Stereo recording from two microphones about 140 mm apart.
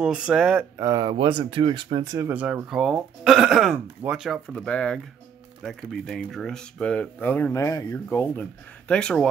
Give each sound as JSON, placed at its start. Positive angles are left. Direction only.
{"t": 0.0, "sound": "speech", "side_deg": -5}
{"t": 0.7, "sound": "speech", "side_deg": -25}
{"t": 2.1, "sound": "speech", "side_deg": -15}